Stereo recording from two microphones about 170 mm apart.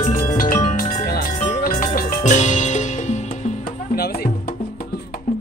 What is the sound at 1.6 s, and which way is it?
Music, 50° left (ahead or behind).